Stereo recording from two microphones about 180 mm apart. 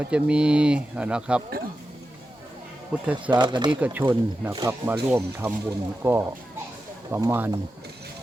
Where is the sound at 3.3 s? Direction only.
25° right (ahead or behind).